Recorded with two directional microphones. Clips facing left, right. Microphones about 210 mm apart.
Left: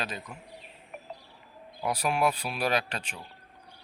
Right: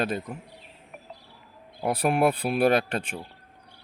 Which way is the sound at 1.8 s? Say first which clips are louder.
Right 5 dB; 55° right (ahead or behind).